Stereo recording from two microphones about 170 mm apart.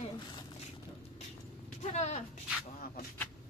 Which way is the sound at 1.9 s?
40° left (ahead or behind).